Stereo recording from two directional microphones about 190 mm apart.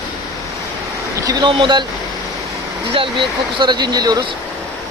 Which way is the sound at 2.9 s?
25° right (ahead or behind).